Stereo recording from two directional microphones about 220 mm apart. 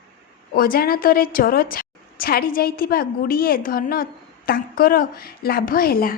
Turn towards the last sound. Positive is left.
turn(degrees=40)  # may be behind; listen again after turning